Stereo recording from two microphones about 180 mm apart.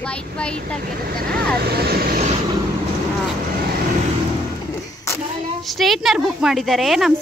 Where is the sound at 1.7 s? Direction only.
60° right (ahead or behind).